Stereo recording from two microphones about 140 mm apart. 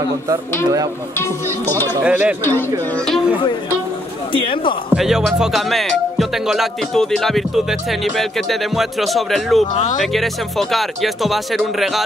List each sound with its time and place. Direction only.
2.0 s speech: 10° right (ahead or behind)
4.3 s speech: 40° left (ahead or behind)
4.9 s speech: 5° right (ahead or behind)
9.8 s speech: 65° left (ahead or behind)
10.1 s speech: centre (ahead or behind)